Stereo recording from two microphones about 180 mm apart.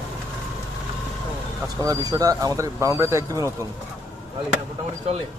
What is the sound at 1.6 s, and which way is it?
Speech, 20° right (ahead or behind).